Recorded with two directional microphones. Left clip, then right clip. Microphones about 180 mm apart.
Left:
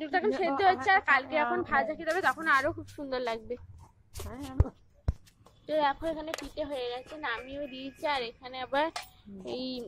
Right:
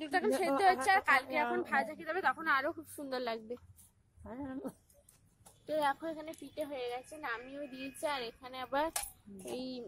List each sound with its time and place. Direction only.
0.0 s a sound: 10° right (ahead or behind)
0.8 s a woman's voice: 10° right (ahead or behind)
4.3 s a woman's voice: 70° right (ahead or behind)
5.7 s a woman's voice: 5° right (ahead or behind)